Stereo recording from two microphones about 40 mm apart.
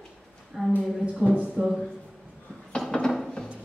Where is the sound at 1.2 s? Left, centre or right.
Centre.